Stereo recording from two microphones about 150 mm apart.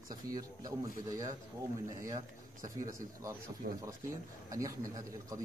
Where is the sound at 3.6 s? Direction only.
90° right.